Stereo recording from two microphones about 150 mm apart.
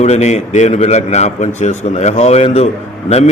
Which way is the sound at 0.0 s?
50° left (ahead or behind).